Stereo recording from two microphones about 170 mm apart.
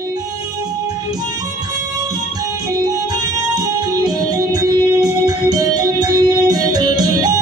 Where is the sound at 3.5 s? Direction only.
20° right (ahead or behind).